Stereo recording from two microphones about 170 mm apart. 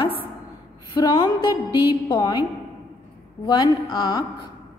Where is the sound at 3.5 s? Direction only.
20° left (ahead or behind).